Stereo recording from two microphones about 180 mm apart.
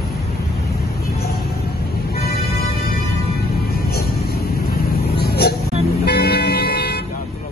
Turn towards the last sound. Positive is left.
turn(degrees=65)  # may be behind; listen again after turning